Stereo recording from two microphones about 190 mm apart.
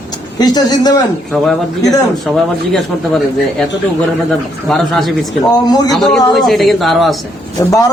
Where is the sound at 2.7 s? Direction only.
Centre (ahead or behind).